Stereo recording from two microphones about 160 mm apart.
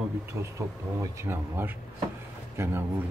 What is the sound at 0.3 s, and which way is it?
Speech, 15° right (ahead or behind).